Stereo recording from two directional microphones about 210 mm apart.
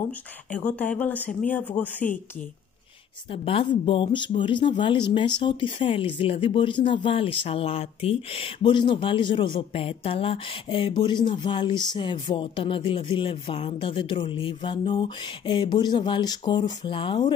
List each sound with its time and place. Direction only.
0.5 s speech: 5° left (ahead or behind)
3.3 s speech: 25° left (ahead or behind)